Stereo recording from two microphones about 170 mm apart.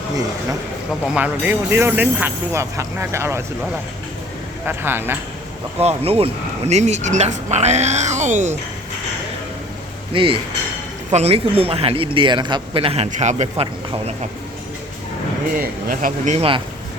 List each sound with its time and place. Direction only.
1.0 s speech: 5° right (ahead or behind)
4.6 s speech: 10° right (ahead or behind)
5.8 s speech: 35° right (ahead or behind)
10.1 s a man's voice: 30° right (ahead or behind)
15.5 s speech: 55° right (ahead or behind); by 16.6 s 35° right (ahead or behind)